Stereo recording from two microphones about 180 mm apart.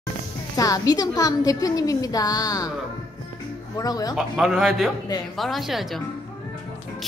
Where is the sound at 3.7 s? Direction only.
20° left (ahead or behind).